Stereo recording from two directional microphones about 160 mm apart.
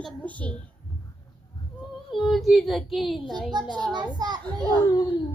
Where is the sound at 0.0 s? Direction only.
10° left (ahead or behind).